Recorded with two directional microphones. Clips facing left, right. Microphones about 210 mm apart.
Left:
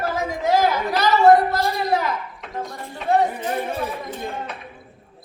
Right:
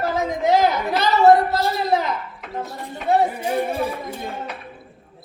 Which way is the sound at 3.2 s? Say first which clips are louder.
Right 2 dB; 10° right (ahead or behind).